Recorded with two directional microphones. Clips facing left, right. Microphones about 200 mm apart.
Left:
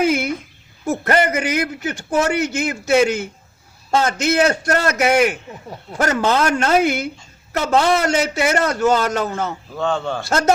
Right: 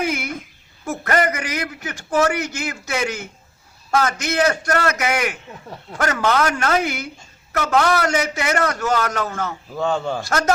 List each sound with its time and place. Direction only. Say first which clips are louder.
0.0 s a sound: left 6 dB; 25° left (ahead or behind)
0.9 s a man's voice: left 3 dB; 25° left (ahead or behind)
9.7 s a man's voice: even; 5° right (ahead or behind)
10.2 s a man's voice: left 6 dB; 25° left (ahead or behind)